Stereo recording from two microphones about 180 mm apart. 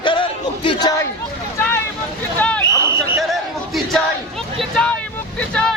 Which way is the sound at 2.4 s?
5° left (ahead or behind).